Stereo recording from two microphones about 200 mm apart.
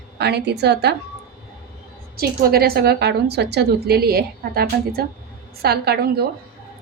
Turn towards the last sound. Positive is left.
turn(degrees=-55)  # may be behind; listen again after turning